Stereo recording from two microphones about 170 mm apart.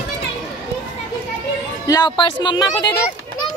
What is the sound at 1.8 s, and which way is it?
Speech, 25° left (ahead or behind).